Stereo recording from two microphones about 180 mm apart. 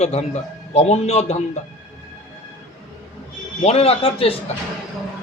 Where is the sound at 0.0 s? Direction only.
35° left (ahead or behind).